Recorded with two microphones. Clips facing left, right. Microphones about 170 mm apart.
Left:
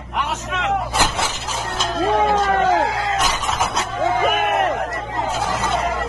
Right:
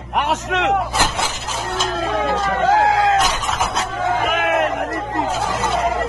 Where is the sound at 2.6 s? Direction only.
90° right.